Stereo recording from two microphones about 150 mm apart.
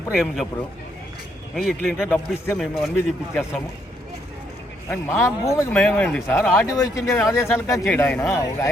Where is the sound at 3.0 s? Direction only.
15° left (ahead or behind).